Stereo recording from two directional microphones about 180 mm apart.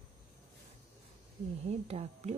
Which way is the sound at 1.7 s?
35° right (ahead or behind).